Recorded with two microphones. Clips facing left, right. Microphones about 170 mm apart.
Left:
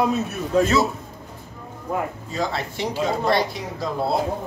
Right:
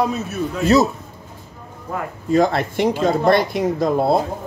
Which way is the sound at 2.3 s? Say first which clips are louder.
Right 13 dB; 55° right (ahead or behind).